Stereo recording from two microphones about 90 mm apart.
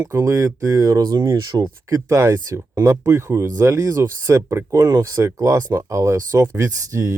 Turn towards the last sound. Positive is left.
turn(degrees=-35)  # may be behind; listen again after turning